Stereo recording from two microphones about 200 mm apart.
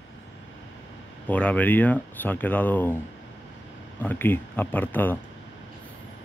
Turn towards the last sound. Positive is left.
turn(degrees=10)  # may be behind; listen again after turning